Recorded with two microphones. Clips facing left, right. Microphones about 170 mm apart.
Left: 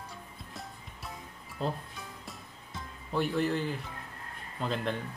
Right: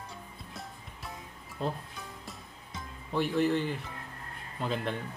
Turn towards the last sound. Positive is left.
turn(degrees=0)  # may be behind; listen again after turning